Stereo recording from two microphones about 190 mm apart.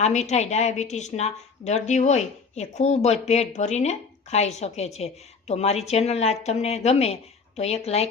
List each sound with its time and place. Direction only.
0.0 s a woman's voice: 35° left (ahead or behind)